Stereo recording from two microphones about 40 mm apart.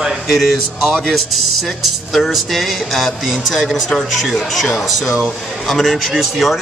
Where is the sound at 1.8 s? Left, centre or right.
Centre.